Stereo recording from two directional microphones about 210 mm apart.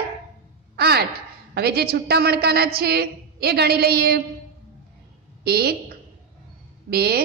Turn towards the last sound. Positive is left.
turn(degrees=-50)  # may be behind; listen again after turning